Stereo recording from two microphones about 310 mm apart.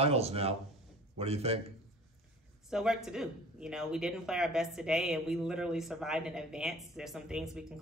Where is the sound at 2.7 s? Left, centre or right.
Centre.